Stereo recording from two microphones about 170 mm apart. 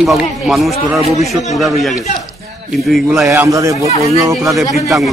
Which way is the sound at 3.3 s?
20° right (ahead or behind).